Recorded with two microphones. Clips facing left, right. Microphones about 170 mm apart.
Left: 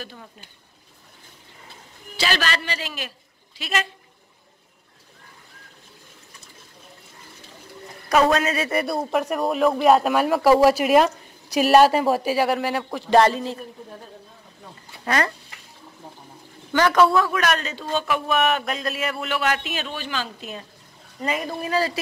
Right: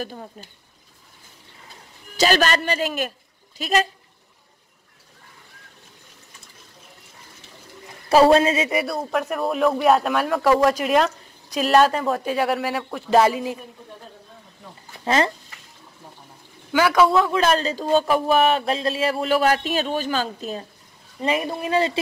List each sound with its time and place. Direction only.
0.0 s speech: 40° right (ahead or behind)
2.1 s speech: 45° right (ahead or behind)
8.1 s speech: 30° right (ahead or behind)
8.8 s speech: centre (ahead or behind)
15.0 s speech: 25° right (ahead or behind)
16.7 s a man's voice: 10° right (ahead or behind)
17.1 s speech: 25° right (ahead or behind)
21.2 s speech: 25° right (ahead or behind)